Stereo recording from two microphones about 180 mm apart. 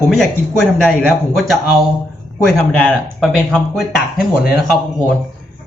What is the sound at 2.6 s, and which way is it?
Speech, 5° left (ahead or behind).